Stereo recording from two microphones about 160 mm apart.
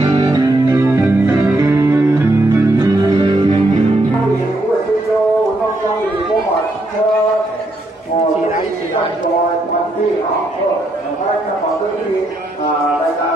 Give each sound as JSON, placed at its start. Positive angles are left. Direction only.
{"t": 0.2, "sound": "music", "side_deg": -25}